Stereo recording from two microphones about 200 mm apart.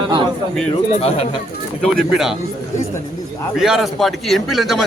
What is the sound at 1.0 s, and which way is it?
Speech, 30° left (ahead or behind).